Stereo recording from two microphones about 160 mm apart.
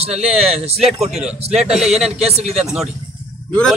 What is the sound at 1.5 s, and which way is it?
A man's voice, 40° right (ahead or behind).